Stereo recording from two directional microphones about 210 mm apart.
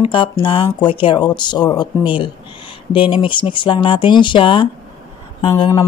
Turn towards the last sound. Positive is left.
turn(degrees=15)  # may be behind; listen again after turning